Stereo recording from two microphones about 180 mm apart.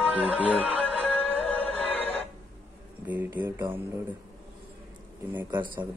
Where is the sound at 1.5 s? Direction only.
10° left (ahead or behind).